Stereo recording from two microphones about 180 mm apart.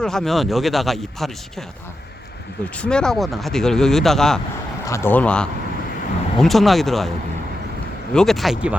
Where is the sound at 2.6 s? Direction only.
5° left (ahead or behind).